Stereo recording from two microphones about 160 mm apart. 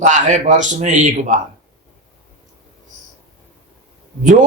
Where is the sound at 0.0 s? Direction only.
50° right (ahead or behind).